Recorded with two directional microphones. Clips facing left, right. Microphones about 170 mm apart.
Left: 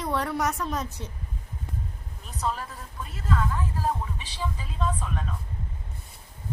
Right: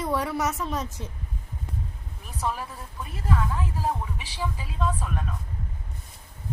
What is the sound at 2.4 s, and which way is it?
Speech, 10° right (ahead or behind).